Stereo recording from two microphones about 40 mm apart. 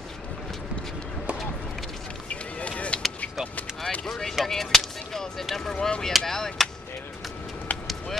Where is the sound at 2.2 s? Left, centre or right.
Left.